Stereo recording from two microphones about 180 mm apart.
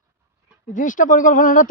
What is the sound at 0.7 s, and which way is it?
Speech, 45° left (ahead or behind).